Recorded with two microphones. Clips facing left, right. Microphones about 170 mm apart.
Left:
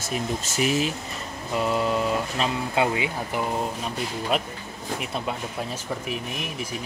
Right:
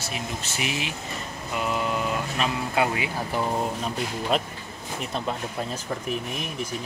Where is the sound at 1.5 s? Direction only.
30° left (ahead or behind).